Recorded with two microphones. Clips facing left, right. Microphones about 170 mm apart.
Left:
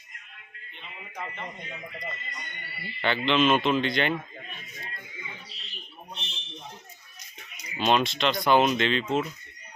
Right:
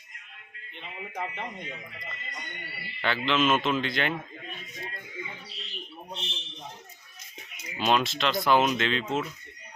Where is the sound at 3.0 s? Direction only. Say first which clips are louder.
Left 2 dB; centre (ahead or behind).